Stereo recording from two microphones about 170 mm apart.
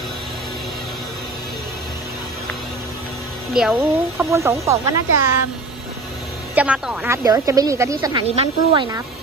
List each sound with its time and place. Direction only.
3.5 s speech: 5° right (ahead or behind)
4.3 s speech: 15° right (ahead or behind)
6.5 s speech: 5° right (ahead or behind)
7.2 s speech: 20° right (ahead or behind)